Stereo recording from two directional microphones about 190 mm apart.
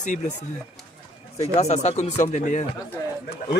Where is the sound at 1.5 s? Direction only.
35° left (ahead or behind).